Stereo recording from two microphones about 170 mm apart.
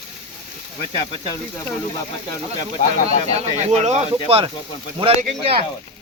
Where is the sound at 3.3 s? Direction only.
40° right (ahead or behind).